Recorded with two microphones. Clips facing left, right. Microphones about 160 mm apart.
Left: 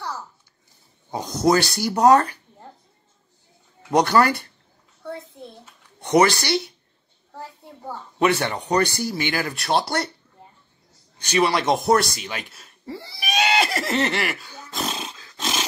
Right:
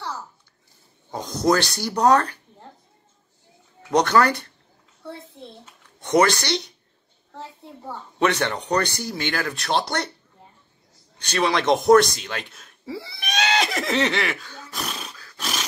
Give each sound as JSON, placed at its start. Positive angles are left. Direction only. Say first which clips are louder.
{"t": 1.1, "sound": "speech", "louder": "left 1 dB", "side_deg": 10}
{"t": 3.9, "sound": "speech", "louder": "left 1 dB", "side_deg": 10}
{"t": 6.1, "sound": "speech", "louder": "left 1 dB", "side_deg": 10}
{"t": 7.8, "sound": "speech", "louder": "left 1 dB", "side_deg": 5}
{"t": 11.2, "sound": "speech", "louder": "left 1 dB", "side_deg": 10}
{"t": 14.7, "sound": "dog", "louder": "left 4 dB", "side_deg": 30}